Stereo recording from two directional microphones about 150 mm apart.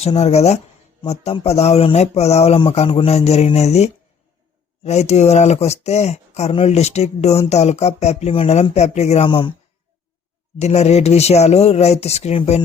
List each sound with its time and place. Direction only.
0.0 s speech: 45° left (ahead or behind)
10.6 s speech: 45° left (ahead or behind)